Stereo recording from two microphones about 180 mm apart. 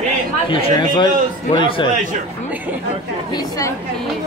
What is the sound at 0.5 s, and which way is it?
Speech, 30° left (ahead or behind).